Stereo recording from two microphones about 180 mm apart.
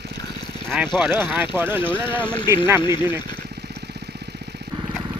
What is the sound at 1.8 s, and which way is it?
Speech, 30° left (ahead or behind).